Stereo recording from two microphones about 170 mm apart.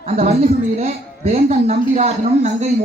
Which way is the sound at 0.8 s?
35° right (ahead or behind).